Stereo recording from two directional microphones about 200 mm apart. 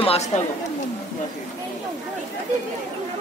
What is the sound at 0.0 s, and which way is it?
Chatter, 30° left (ahead or behind).